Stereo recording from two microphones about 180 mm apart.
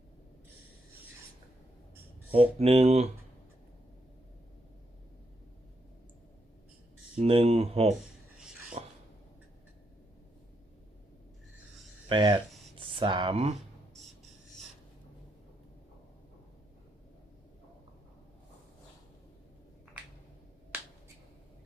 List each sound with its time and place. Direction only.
2.3 s speech: 35° right (ahead or behind)
7.2 s speech: 35° right (ahead or behind)
8.8 s a sound: 35° right (ahead or behind)
12.0 s speech: 25° right (ahead or behind)